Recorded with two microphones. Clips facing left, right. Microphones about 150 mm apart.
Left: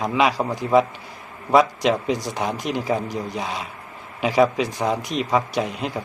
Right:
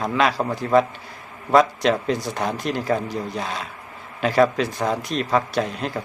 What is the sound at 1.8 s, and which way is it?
A man's voice, 15° left (ahead or behind).